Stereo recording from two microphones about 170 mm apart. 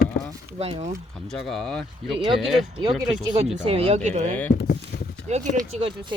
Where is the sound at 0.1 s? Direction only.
65° left (ahead or behind).